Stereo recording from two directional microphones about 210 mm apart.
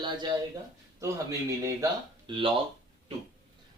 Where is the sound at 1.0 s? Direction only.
15° right (ahead or behind).